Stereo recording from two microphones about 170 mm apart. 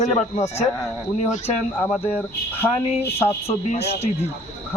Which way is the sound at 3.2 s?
35° left (ahead or behind).